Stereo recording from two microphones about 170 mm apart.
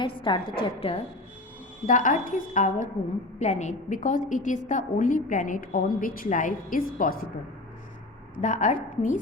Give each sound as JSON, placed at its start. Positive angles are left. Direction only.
{"t": 0.0, "sound": "a woman's voice", "side_deg": 30}
{"t": 1.9, "sound": "a woman's voice", "side_deg": 50}
{"t": 8.4, "sound": "a woman's voice", "side_deg": 45}